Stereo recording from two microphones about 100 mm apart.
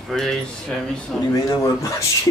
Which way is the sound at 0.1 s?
Centre (ahead or behind).